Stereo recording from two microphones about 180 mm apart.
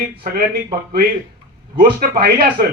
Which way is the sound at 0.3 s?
55° right (ahead or behind).